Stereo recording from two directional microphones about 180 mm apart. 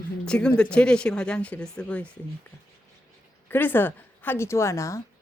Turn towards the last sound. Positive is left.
turn(degrees=15)  # may be behind; listen again after turning